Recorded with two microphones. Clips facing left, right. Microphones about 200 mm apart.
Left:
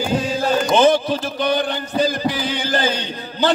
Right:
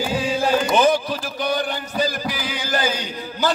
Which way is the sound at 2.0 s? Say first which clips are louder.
Left 5 dB; 25° left (ahead or behind).